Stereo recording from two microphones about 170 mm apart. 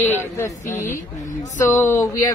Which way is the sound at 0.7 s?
50° left (ahead or behind).